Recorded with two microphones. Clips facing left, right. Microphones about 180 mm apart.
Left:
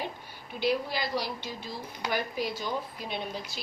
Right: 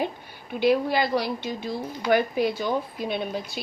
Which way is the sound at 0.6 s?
60° right (ahead or behind).